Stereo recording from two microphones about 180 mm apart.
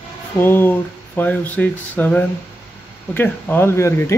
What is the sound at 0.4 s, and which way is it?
Speech, 10° left (ahead or behind).